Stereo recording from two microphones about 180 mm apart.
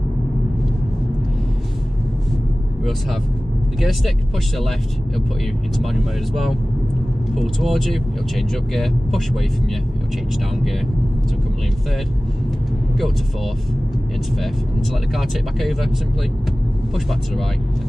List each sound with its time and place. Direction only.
4.6 s speech: centre (ahead or behind)
7.3 s speech: centre (ahead or behind)
14.4 s speech: centre (ahead or behind)